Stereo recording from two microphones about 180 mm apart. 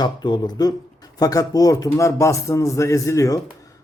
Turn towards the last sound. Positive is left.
turn(degrees=20)  # may be behind; listen again after turning